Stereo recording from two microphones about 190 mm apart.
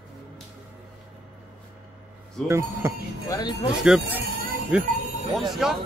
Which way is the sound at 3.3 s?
20° left (ahead or behind).